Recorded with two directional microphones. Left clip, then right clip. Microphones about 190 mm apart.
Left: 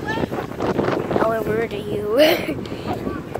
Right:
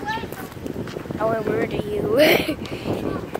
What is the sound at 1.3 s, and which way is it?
A child's voice, centre (ahead or behind).